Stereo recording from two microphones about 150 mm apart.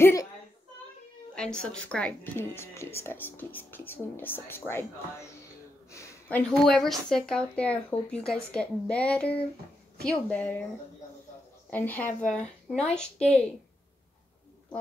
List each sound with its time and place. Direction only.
0.0 s a sound: 20° left (ahead or behind)
1.3 s speech: 5° left (ahead or behind)
11.7 s speech: 10° left (ahead or behind)